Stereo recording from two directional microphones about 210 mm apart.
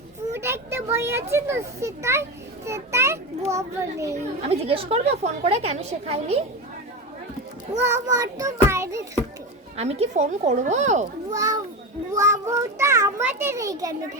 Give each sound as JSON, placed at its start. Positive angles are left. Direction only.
{"t": 0.3, "sound": "a child's voice", "side_deg": -10}
{"t": 4.2, "sound": "a woman's voice", "side_deg": -30}
{"t": 7.8, "sound": "a child's voice", "side_deg": -10}
{"t": 9.7, "sound": "speech", "side_deg": -30}
{"t": 11.3, "sound": "a child's voice", "side_deg": -15}